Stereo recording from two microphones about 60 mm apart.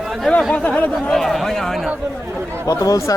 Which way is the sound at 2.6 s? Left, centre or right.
Left.